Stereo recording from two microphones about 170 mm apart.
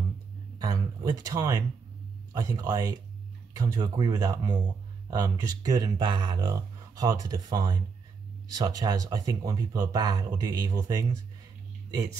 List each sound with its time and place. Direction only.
0.6 s speech: 20° right (ahead or behind)